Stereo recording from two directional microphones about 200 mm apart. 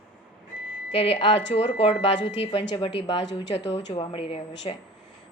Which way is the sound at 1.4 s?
60° left (ahead or behind).